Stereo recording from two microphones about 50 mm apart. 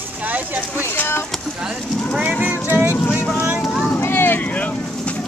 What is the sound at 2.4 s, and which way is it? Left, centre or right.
Music, right.